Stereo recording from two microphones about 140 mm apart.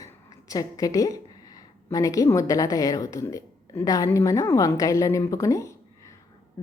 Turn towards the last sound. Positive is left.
turn(degrees=20)  # may be behind; listen again after turning